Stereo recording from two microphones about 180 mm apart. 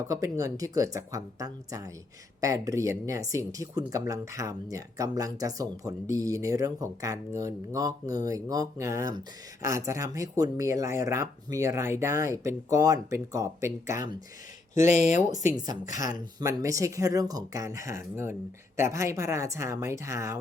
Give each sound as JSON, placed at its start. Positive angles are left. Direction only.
{"t": 0.1, "sound": "speech", "side_deg": -20}
{"t": 14.8, "sound": "speech", "side_deg": 40}
{"t": 15.5, "sound": "speech", "side_deg": -20}